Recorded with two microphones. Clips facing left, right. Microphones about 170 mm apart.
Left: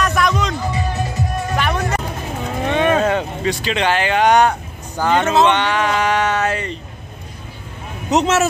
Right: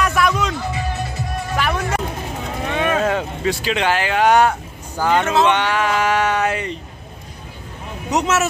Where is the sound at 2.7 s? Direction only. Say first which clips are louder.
Left 4 dB; 30° left (ahead or behind).